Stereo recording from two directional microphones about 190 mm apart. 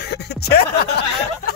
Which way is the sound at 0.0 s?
60° left (ahead or behind).